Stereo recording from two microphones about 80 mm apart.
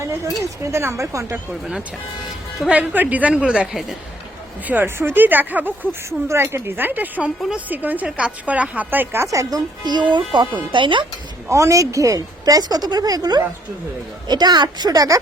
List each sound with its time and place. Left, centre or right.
0.6 s speech: right
2.6 s a woman's voice: centre
4.6 s a woman's voice: right
6.1 s a woman's voice: right
9.2 s speech: right
10.5 s speech: right
11.4 s speech: right